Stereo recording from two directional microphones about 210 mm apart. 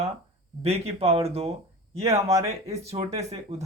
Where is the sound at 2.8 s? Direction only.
30° right (ahead or behind).